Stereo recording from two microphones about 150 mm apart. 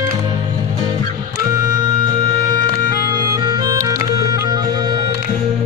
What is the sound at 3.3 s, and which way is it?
Music, 25° right (ahead or behind).